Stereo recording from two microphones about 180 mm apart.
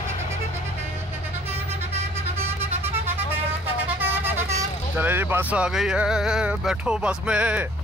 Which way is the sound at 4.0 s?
10° right (ahead or behind).